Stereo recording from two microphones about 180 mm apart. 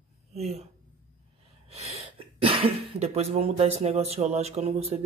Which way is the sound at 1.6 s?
35° right (ahead or behind).